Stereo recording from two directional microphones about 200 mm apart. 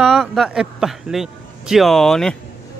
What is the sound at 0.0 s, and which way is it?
A man's voice, centre (ahead or behind).